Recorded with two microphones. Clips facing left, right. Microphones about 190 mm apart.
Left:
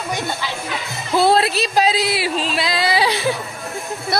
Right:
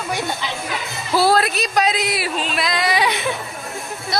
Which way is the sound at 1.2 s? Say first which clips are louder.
Left 1 dB; 25° left (ahead or behind).